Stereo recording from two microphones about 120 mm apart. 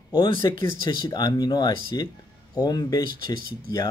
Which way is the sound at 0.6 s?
35° left (ahead or behind).